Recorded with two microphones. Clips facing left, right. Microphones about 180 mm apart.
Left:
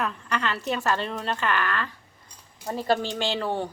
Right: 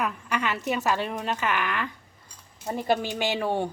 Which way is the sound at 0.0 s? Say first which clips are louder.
Even; 10° right (ahead or behind).